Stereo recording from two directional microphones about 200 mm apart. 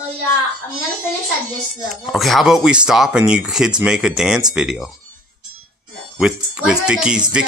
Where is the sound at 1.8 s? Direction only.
Centre (ahead or behind).